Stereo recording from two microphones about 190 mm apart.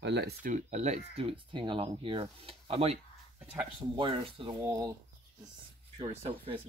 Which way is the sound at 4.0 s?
25° right (ahead or behind).